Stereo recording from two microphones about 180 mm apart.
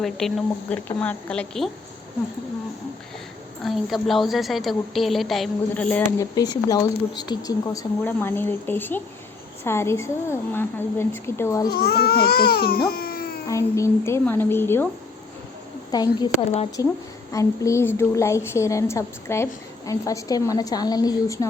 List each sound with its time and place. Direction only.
0.0 s a woman's voice: centre (ahead or behind)
3.6 s a woman's voice: centre (ahead or behind); by 11.7 s 15° left (ahead or behind)
11.7 s baby cry: 60° left (ahead or behind)
13.5 s a woman's voice: 15° left (ahead or behind)
15.9 s speech: 20° left (ahead or behind)
16.8 s a woman's voice: 15° right (ahead or behind)
17.3 s a woman's voice: 15° left (ahead or behind)